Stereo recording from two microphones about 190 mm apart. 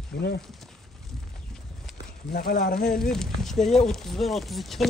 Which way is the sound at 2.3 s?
55° left (ahead or behind).